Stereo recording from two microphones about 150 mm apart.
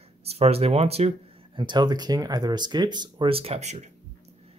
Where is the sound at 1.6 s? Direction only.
30° right (ahead or behind).